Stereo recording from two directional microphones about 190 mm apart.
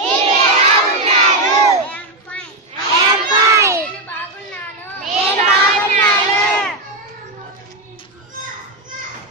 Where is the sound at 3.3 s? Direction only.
15° right (ahead or behind).